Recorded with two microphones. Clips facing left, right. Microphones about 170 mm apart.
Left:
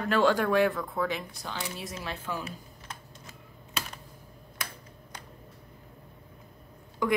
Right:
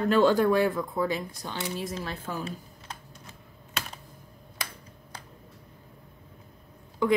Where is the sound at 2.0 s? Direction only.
40° right (ahead or behind).